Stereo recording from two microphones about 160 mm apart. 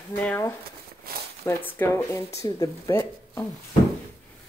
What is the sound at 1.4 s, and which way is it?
Speech, 10° left (ahead or behind).